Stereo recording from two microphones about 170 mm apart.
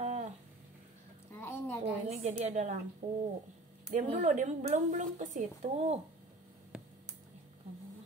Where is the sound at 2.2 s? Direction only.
45° right (ahead or behind).